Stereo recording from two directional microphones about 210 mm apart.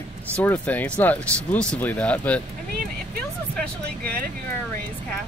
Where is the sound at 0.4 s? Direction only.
10° left (ahead or behind).